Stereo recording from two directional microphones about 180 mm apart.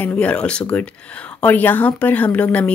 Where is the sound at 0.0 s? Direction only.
5° left (ahead or behind).